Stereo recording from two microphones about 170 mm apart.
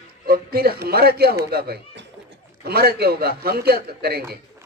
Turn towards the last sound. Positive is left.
turn(degrees=-65)  # may be behind; listen again after turning